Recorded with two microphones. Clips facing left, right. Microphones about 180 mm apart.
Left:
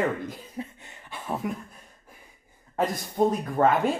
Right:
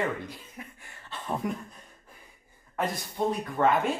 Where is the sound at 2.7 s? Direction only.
40° left (ahead or behind).